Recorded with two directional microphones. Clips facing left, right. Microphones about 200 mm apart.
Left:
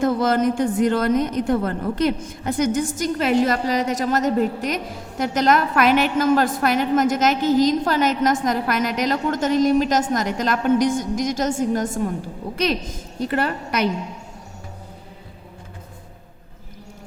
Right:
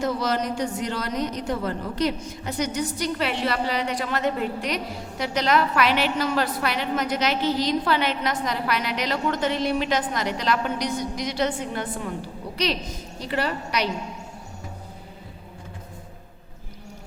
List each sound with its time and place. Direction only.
0.0 s a woman's voice: 50° left (ahead or behind)